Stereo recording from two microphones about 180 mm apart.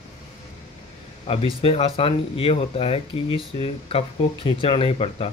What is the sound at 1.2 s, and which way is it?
Speech, 30° left (ahead or behind).